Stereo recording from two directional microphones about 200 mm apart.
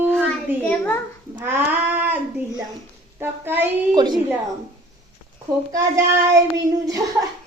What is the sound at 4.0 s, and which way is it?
Speech, 20° right (ahead or behind).